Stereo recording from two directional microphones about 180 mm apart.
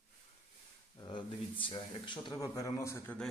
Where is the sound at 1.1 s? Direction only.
25° left (ahead or behind).